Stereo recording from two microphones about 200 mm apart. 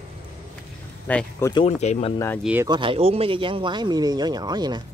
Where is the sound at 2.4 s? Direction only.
10° right (ahead or behind).